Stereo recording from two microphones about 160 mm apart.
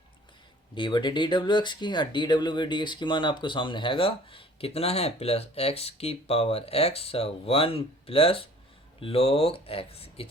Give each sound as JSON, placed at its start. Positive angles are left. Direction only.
{"t": 0.8, "sound": "speech", "side_deg": 30}